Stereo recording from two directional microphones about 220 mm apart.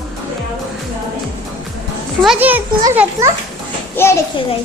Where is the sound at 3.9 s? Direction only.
10° left (ahead or behind).